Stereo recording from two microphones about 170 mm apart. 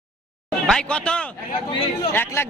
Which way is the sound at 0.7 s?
5° left (ahead or behind).